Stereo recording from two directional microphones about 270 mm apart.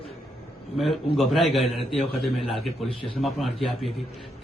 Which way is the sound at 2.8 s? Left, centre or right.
Centre.